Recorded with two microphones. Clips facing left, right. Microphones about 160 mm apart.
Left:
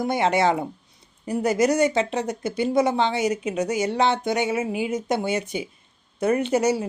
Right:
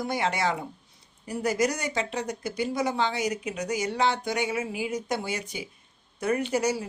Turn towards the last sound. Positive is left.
turn(degrees=25)  # may be behind; listen again after turning